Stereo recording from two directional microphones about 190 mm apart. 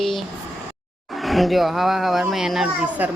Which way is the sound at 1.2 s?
Centre (ahead or behind).